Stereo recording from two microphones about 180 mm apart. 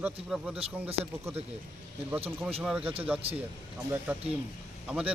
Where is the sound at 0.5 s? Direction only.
35° right (ahead or behind).